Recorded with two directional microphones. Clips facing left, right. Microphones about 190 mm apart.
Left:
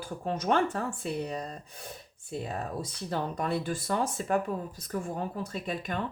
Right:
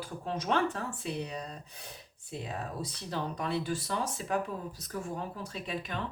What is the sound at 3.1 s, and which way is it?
Speech, 50° left (ahead or behind).